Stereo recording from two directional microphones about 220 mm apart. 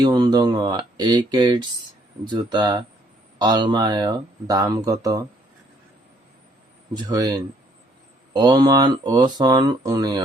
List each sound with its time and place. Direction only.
0.0 s speech: 15° right (ahead or behind)
6.9 s speech: 15° right (ahead or behind)